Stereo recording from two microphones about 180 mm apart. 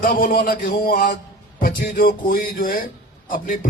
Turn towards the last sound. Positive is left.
turn(degrees=50)  # may be behind; listen again after turning